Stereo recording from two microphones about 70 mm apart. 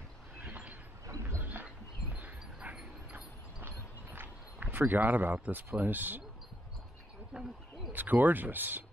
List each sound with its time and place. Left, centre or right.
0.4 s train: right
1.0 s horse: right
1.4 s a sound: right
2.1 s dog: right
3.6 s clip-clop: right
7.3 s owl: centre
7.9 s speech: right